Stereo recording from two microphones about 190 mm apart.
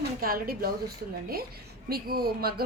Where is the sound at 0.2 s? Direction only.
50° right (ahead or behind).